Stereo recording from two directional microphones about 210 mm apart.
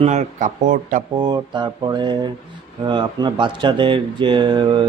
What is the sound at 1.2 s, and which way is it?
Speech, 20° right (ahead or behind).